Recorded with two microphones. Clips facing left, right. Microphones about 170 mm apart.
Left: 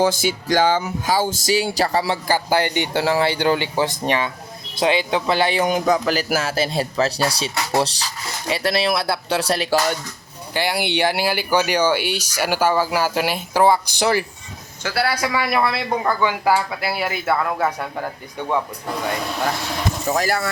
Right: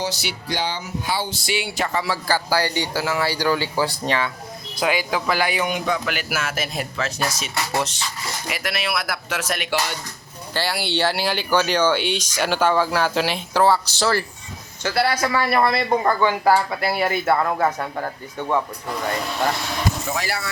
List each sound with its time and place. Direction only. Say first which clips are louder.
0.0 s a man's voice: left 8 dB; 50° left (ahead or behind)
2.2 s speech: left 2 dB; 20° left (ahead or behind)
5.6 s a man's voice: left 5 dB; 40° left (ahead or behind)
10.5 s speech: left 3 dB; 15° left (ahead or behind)
20.1 s speech: left 6 dB; 45° left (ahead or behind)